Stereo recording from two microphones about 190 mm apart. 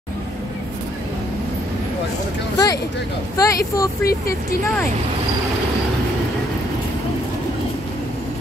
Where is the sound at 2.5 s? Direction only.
20° left (ahead or behind).